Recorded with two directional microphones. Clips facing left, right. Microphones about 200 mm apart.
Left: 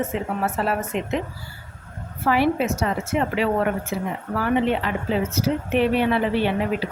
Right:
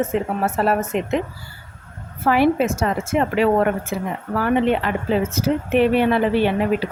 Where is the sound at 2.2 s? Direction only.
50° right (ahead or behind).